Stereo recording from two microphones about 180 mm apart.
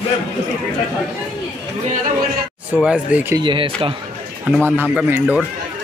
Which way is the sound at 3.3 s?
25° right (ahead or behind).